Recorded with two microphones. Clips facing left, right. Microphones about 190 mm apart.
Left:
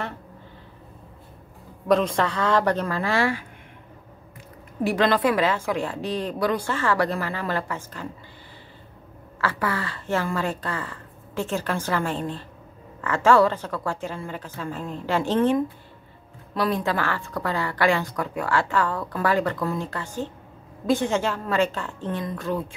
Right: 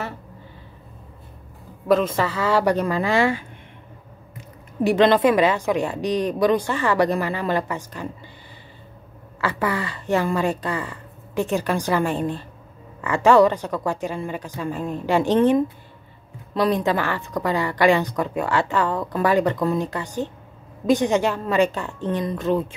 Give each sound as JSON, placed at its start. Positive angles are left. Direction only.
{"t": 1.9, "sound": "a woman's voice", "side_deg": 0}
{"t": 4.8, "sound": "a woman's voice", "side_deg": -20}
{"t": 9.4, "sound": "a woman's voice", "side_deg": -15}